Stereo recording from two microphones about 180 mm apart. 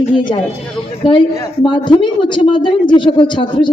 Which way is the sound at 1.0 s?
30° left (ahead or behind).